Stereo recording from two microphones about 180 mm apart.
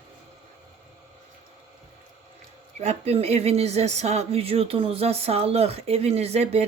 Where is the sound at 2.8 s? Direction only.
35° right (ahead or behind).